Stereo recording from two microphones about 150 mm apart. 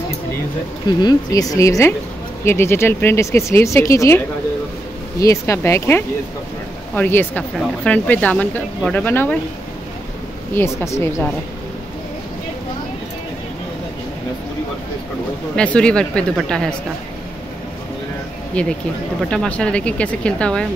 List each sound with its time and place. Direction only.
1.0 s speech: 25° left (ahead or behind)
5.2 s speech: 20° left (ahead or behind)
10.5 s speech: 15° left (ahead or behind)
15.5 s speech: 5° left (ahead or behind)
18.5 s speech: 5° left (ahead or behind)